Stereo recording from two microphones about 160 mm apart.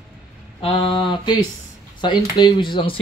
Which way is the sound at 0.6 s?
35° left (ahead or behind).